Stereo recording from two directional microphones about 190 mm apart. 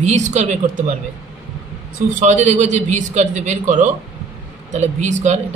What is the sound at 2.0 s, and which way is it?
A man's voice, 40° right (ahead or behind).